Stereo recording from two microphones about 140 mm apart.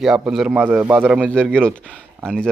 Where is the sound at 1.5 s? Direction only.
5° left (ahead or behind).